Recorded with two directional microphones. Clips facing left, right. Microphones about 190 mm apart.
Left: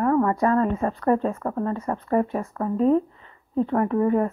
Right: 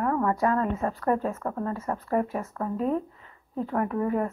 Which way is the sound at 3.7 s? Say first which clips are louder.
Left 5 dB; centre (ahead or behind).